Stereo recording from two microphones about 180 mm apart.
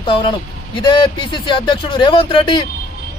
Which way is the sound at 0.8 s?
25° left (ahead or behind).